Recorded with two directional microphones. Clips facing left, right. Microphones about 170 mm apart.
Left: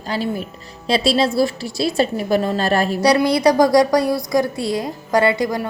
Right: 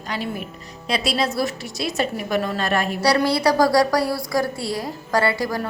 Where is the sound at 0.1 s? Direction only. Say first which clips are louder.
Left 5 dB; 30° left (ahead or behind).